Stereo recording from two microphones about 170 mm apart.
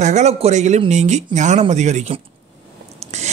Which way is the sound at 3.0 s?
40° right (ahead or behind).